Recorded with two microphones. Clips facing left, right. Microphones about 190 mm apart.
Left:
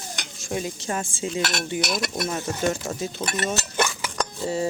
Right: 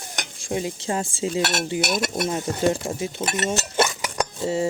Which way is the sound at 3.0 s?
25° right (ahead or behind).